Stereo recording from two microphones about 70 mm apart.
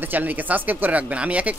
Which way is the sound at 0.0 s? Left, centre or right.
Right.